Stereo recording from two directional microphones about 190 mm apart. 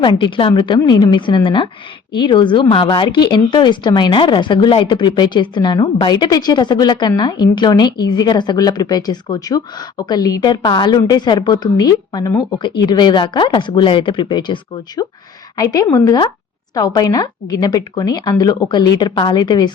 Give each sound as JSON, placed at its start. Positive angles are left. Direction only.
{"t": 0.0, "sound": "speech", "side_deg": 25}